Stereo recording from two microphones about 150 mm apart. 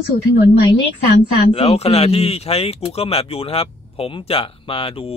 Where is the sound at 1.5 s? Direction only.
40° left (ahead or behind).